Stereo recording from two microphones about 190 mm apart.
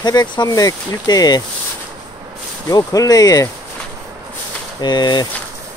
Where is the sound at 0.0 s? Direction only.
20° left (ahead or behind).